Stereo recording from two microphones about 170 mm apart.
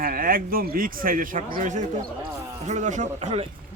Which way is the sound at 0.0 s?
55° right (ahead or behind).